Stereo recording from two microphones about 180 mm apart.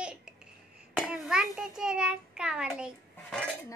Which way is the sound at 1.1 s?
5° right (ahead or behind).